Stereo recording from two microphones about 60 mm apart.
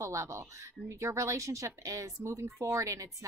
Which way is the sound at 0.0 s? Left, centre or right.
Right.